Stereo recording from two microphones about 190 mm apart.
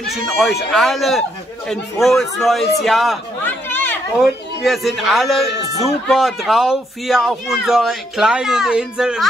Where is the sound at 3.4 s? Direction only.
10° left (ahead or behind).